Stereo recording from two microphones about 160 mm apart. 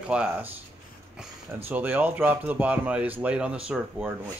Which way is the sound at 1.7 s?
10° right (ahead or behind).